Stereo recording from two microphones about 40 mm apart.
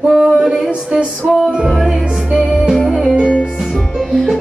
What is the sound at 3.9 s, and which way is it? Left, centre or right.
Music, centre.